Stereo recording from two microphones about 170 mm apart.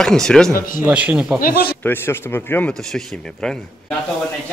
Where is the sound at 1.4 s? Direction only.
60° left (ahead or behind).